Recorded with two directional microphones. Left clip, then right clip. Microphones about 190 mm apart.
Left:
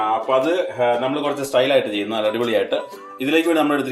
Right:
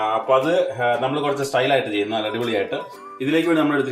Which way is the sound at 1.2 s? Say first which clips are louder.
Left 2 dB; 30° left (ahead or behind).